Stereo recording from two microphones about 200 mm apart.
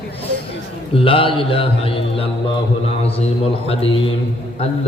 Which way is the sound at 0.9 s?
25° left (ahead or behind).